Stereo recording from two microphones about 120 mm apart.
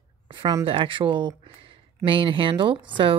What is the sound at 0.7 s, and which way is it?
Speech, 45° right (ahead or behind).